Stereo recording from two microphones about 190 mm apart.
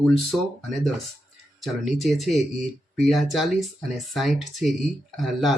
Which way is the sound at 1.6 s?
Centre (ahead or behind).